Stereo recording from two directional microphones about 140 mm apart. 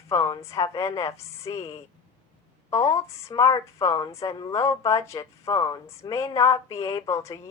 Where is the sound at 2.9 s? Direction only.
20° left (ahead or behind).